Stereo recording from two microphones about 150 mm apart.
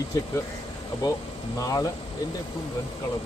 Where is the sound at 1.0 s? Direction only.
25° left (ahead or behind).